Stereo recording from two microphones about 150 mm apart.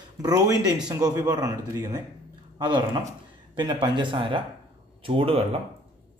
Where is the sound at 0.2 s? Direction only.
25° right (ahead or behind).